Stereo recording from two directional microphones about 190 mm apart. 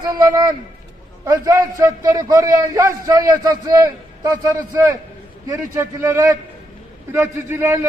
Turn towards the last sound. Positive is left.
turn(degrees=-15)  # may be behind; listen again after turning